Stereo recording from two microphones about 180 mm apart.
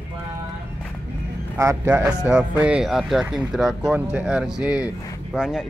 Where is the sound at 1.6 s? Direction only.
15° right (ahead or behind).